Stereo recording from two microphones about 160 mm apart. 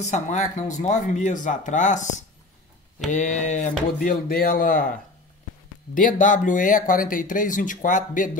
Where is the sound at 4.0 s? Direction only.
60° left (ahead or behind).